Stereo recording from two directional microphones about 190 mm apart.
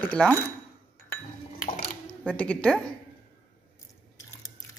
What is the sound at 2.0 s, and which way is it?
Speech, 5° left (ahead or behind).